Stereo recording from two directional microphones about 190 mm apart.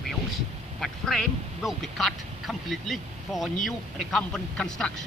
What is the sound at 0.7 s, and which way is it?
Speech, centre (ahead or behind).